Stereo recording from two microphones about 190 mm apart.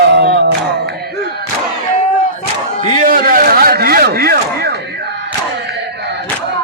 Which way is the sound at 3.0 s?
50° right (ahead or behind).